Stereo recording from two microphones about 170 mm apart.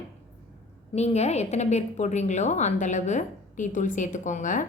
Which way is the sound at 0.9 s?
40° left (ahead or behind).